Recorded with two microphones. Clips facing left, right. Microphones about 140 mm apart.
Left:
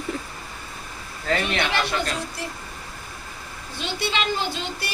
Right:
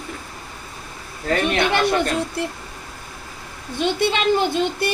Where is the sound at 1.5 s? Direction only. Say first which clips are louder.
Right 6 dB; 55° right (ahead or behind).